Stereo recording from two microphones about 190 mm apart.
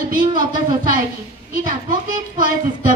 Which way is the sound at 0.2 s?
45° right (ahead or behind).